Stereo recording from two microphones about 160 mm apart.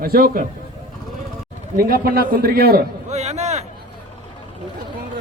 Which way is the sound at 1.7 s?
65° right (ahead or behind).